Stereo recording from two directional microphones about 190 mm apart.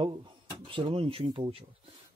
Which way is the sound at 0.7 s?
25° right (ahead or behind).